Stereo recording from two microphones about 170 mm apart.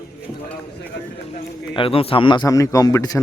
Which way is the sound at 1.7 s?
35° left (ahead or behind).